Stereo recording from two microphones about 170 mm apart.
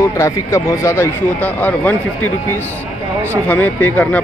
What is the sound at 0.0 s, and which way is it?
Speech, 20° left (ahead or behind).